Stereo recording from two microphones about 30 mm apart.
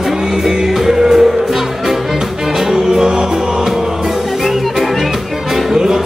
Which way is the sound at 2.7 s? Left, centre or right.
Right.